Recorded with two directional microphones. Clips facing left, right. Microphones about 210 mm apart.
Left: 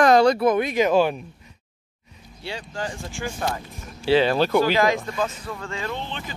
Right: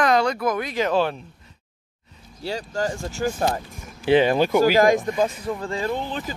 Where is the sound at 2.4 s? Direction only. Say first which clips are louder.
Right 5 dB; 40° right (ahead or behind).